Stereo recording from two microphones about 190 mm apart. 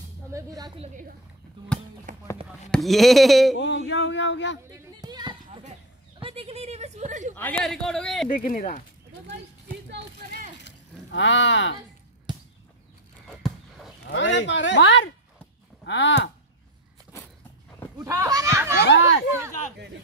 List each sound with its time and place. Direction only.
0.3 s speech: 15° right (ahead or behind)
0.7 s speech: 40° right (ahead or behind)
2.7 s a man's voice: centre (ahead or behind)
3.5 s speech: 70° left (ahead or behind)
4.6 s a sound: 20° right (ahead or behind)
6.2 s speech: 30° right (ahead or behind)
7.3 s a man's voice: 10° left (ahead or behind)
8.5 s speech: 45° left (ahead or behind)
9.8 s speech: 50° right (ahead or behind)
10.6 s a sound: 75° left (ahead or behind)
13.4 s a sound: centre (ahead or behind)
14.0 s speech: 70° left (ahead or behind)
17.9 s speech: 15° right (ahead or behind)
18.8 s speech: 80° left